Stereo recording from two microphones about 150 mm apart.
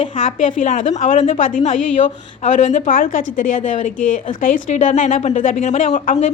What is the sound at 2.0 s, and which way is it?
A woman's voice, 50° left (ahead or behind).